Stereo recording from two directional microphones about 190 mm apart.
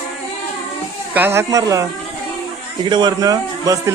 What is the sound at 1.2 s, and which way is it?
Speech, 10° right (ahead or behind).